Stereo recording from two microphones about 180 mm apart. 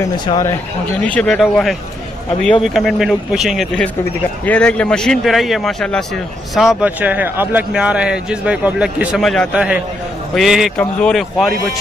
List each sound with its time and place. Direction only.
0.0 s speech: 15° left (ahead or behind); by 11.5 s centre (ahead or behind)